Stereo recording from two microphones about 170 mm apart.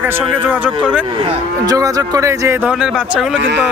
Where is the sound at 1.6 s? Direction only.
20° right (ahead or behind).